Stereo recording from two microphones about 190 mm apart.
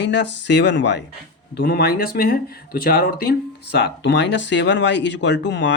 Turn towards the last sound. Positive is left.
turn(degrees=70)  # may be behind; listen again after turning